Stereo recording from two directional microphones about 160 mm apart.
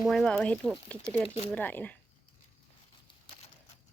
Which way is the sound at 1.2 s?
40° left (ahead or behind).